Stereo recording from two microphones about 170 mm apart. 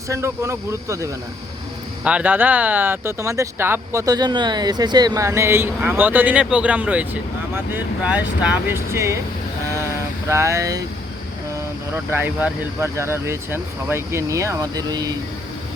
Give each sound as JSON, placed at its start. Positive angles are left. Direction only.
{"t": 0.1, "sound": "speech", "side_deg": -15}
{"t": 10.2, "sound": "speech", "side_deg": -15}
{"t": 12.1, "sound": "speech", "side_deg": -15}